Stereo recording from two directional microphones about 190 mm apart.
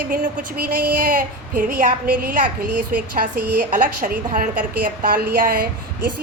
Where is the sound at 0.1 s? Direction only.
45° right (ahead or behind).